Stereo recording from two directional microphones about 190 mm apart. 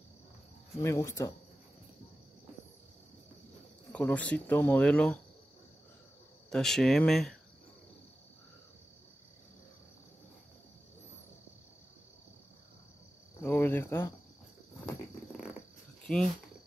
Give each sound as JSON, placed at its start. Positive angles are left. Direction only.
{"t": 0.7, "sound": "speech", "side_deg": 15}
{"t": 3.9, "sound": "speech", "side_deg": 5}
{"t": 6.5, "sound": "speech", "side_deg": 0}
{"t": 13.4, "sound": "cricket", "side_deg": 10}
{"t": 16.1, "sound": "speech", "side_deg": 0}